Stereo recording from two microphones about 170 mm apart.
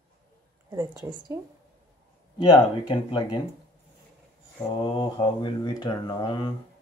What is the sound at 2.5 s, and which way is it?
Speech, 25° left (ahead or behind).